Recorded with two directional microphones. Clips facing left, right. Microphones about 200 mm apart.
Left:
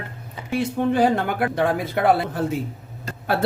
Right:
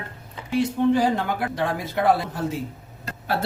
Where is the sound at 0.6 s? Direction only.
60° left (ahead or behind).